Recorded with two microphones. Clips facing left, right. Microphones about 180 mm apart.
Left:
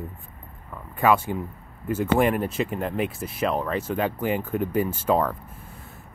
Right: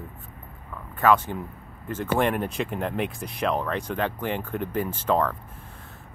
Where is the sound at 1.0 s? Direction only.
10° left (ahead or behind).